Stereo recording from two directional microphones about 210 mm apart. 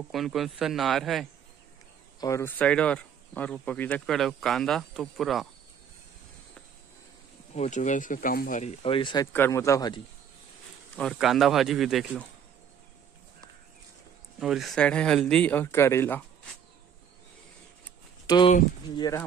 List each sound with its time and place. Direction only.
0.1 s speech: centre (ahead or behind)
2.1 s speech: 15° left (ahead or behind); by 5.5 s centre (ahead or behind)
7.5 s speech: 35° left (ahead or behind); by 10.0 s 20° left (ahead or behind)
11.0 s speech: centre (ahead or behind)
14.4 s speech: centre (ahead or behind)
18.2 s a sound: 20° left (ahead or behind)
18.9 s speech: 15° left (ahead or behind)